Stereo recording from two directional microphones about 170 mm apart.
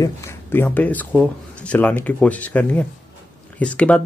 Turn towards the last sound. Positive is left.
turn(degrees=5)  # may be behind; listen again after turning